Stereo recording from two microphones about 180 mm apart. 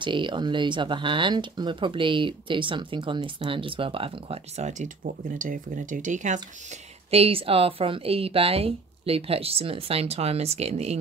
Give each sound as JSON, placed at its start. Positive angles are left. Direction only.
{"t": 0.0, "sound": "a woman's voice", "side_deg": -25}